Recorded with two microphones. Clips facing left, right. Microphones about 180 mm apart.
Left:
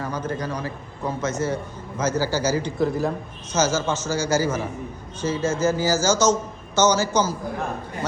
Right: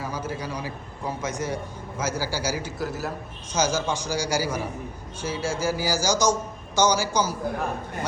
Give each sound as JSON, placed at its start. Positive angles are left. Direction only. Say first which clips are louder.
{"t": 0.0, "sound": "a man's voice", "louder": "left 3 dB", "side_deg": -10}